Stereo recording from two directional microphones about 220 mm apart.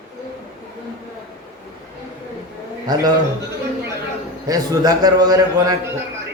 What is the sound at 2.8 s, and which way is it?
Speech, 20° right (ahead or behind).